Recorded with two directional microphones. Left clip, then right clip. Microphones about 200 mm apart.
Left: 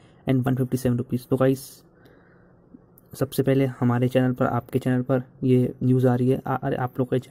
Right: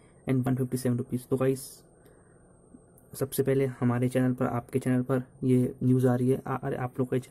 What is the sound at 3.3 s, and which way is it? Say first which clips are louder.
Speech: left 4 dB; 20° left (ahead or behind).